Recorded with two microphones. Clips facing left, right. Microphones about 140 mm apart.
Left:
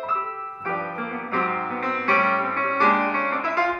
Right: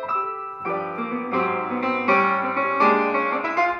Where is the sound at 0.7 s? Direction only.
35° right (ahead or behind).